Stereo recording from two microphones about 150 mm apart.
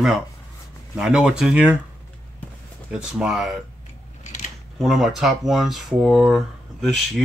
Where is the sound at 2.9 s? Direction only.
5° right (ahead or behind).